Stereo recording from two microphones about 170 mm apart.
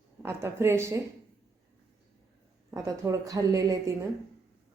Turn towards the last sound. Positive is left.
turn(degrees=-20)  # may be behind; listen again after turning